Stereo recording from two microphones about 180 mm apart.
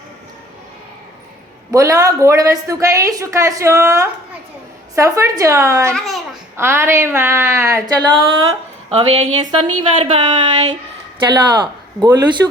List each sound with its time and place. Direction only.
1.7 s a woman's voice: 20° right (ahead or behind)
5.9 s a child's voice: centre (ahead or behind)
6.6 s a woman's voice: 15° right (ahead or behind)
8.9 s a woman's voice: 35° right (ahead or behind)